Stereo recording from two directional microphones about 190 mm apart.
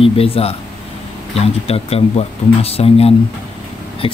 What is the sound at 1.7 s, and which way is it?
Speech, 30° left (ahead or behind).